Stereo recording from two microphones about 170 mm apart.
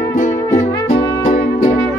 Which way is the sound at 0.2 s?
40° left (ahead or behind).